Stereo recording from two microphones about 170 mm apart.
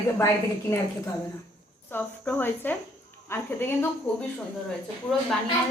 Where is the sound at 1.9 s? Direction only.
10° left (ahead or behind).